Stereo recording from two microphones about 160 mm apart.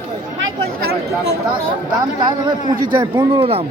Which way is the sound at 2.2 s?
30° right (ahead or behind).